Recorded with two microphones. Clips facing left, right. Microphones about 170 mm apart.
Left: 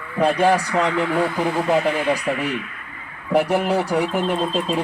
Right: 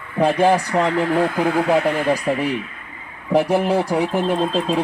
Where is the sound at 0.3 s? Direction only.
20° right (ahead or behind).